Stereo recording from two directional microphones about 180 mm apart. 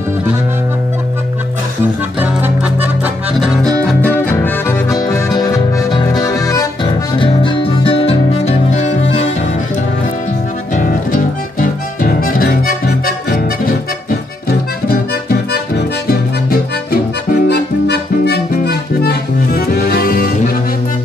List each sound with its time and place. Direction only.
2.1 s music: 10° right (ahead or behind)
3.8 s music: 10° left (ahead or behind); by 9.0 s 35° left (ahead or behind)
10.8 s music: 50° left (ahead or behind)
14.9 s accordion: 55° left (ahead or behind)
16.1 s music: 55° left (ahead or behind)
17.5 s music: 65° left (ahead or behind)